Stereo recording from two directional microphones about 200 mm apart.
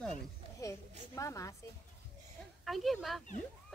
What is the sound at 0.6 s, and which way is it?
Speech, 15° left (ahead or behind).